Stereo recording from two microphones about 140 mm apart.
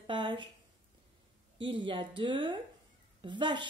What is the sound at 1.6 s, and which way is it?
A woman's voice, 35° right (ahead or behind).